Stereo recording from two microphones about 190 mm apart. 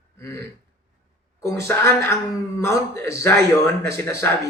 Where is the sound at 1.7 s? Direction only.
15° left (ahead or behind).